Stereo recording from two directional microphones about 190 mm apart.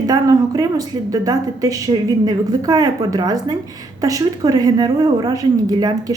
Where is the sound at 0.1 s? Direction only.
20° right (ahead or behind).